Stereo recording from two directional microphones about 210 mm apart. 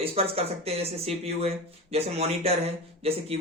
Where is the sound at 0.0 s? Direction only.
25° right (ahead or behind).